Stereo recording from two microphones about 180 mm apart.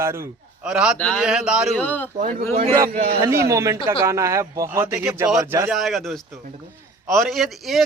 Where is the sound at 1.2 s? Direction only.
5° right (ahead or behind).